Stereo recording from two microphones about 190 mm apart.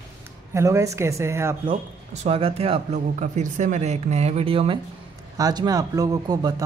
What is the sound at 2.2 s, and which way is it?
A man's voice, 30° right (ahead or behind).